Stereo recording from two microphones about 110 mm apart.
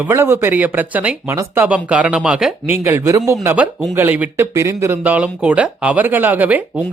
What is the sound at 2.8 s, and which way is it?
Speech, 20° right (ahead or behind).